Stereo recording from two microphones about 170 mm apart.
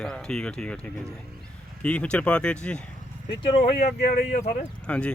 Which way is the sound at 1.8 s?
5° left (ahead or behind).